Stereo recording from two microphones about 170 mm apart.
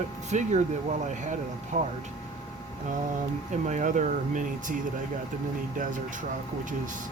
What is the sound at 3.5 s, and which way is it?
Speech, 45° right (ahead or behind).